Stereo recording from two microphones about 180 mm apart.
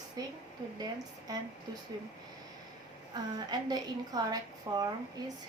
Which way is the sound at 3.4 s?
20° right (ahead or behind).